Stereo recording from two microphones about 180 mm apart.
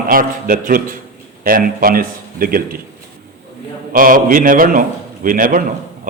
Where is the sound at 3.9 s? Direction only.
50° right (ahead or behind).